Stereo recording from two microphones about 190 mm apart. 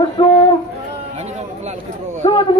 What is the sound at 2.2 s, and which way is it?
Speech, 25° left (ahead or behind).